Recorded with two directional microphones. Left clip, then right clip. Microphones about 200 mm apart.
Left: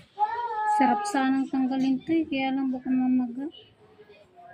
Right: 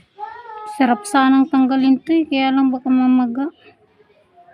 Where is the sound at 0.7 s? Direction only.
60° right (ahead or behind).